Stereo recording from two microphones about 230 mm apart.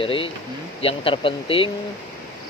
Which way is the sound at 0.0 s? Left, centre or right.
Left.